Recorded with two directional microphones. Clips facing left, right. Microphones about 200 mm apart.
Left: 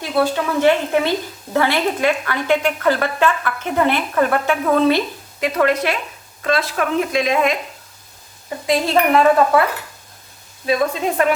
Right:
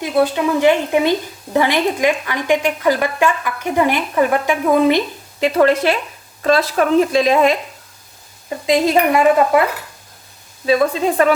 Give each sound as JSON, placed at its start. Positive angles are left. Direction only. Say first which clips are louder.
{"t": 0.0, "sound": "a woman's voice", "louder": "right 3 dB", "side_deg": -20}
{"t": 5.4, "sound": "speech", "louder": "right 4 dB", "side_deg": -30}
{"t": 8.6, "sound": "a woman's voice", "louder": "right 2 dB", "side_deg": -15}